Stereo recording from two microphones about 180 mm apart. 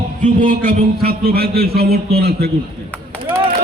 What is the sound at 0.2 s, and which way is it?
A man's voice, 50° right (ahead or behind).